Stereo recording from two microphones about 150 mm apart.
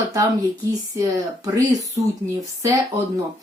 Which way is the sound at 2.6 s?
20° right (ahead or behind).